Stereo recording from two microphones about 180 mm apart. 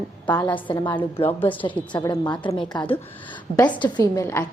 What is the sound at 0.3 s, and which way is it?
Speech, 25° left (ahead or behind).